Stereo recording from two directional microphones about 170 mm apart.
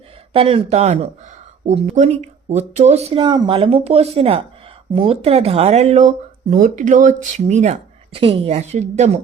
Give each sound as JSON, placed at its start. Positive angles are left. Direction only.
{"t": 0.3, "sound": "speech", "side_deg": -30}